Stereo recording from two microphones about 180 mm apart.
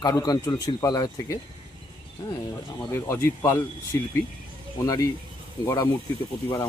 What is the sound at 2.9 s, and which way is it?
Speech, 15° left (ahead or behind).